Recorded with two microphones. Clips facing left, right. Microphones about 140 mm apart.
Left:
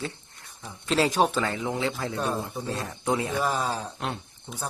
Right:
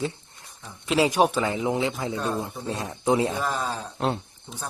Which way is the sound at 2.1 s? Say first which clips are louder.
Right 1 dB; 20° left (ahead or behind).